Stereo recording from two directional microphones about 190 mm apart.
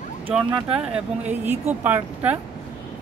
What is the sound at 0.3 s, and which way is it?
Speech, 5° right (ahead or behind).